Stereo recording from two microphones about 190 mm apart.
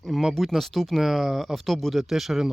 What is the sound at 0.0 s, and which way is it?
Speech, centre (ahead or behind).